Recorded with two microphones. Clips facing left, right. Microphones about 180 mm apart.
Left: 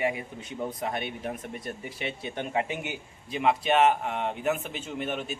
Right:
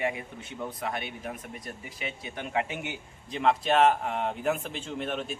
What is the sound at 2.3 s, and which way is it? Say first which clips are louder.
Speech: left 1 dB; 25° left (ahead or behind).